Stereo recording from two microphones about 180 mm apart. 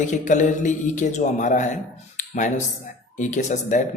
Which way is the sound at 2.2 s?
45° left (ahead or behind).